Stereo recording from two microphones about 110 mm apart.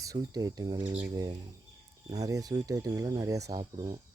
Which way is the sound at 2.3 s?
35° right (ahead or behind).